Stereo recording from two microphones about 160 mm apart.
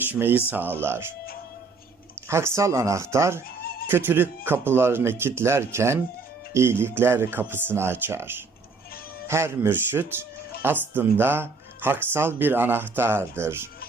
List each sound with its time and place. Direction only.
0.0 s speech: 15° right (ahead or behind)
2.2 s speech: 15° right (ahead or behind)